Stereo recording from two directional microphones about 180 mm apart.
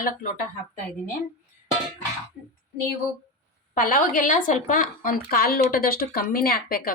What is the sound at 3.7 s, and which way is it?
Speech, 50° left (ahead or behind).